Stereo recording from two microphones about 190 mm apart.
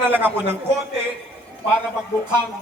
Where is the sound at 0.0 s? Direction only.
10° right (ahead or behind).